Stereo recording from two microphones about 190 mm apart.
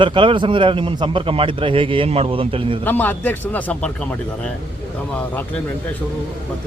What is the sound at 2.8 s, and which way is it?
A man's voice, 10° left (ahead or behind).